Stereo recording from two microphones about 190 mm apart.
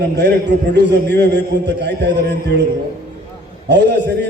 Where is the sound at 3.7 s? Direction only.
65° right (ahead or behind).